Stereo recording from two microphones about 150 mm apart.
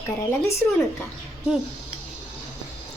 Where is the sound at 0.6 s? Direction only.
15° left (ahead or behind).